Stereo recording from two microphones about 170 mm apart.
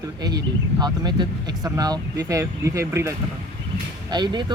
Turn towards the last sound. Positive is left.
turn(degrees=-25)  # may be behind; listen again after turning